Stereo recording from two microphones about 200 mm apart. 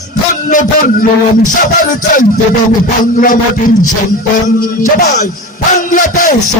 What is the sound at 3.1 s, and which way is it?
Music, 40° left (ahead or behind).